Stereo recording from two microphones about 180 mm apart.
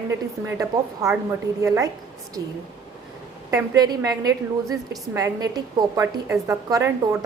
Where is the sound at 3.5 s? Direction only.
20° right (ahead or behind).